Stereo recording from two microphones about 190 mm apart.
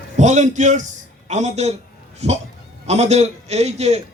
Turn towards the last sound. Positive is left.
turn(degrees=-35)  # may be behind; listen again after turning